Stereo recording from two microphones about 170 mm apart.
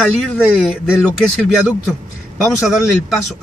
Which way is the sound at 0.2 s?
Centre (ahead or behind).